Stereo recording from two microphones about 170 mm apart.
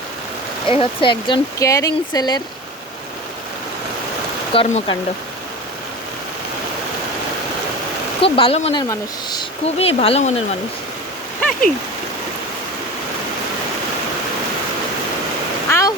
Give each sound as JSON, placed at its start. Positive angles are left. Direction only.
{"t": 0.7, "sound": "speech", "side_deg": 30}
{"t": 4.5, "sound": "speech", "side_deg": 35}
{"t": 8.2, "sound": "speech", "side_deg": 35}
{"t": 8.9, "sound": "speech", "side_deg": 25}
{"t": 9.6, "sound": "speech", "side_deg": 35}
{"t": 11.3, "sound": "a sound", "side_deg": 5}
{"t": 15.7, "sound": "a sound", "side_deg": 15}